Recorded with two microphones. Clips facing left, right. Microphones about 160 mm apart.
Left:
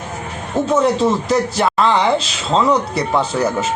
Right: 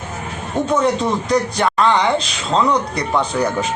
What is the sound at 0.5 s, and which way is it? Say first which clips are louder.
A woman's voice: left 2 dB; 5° left (ahead or behind).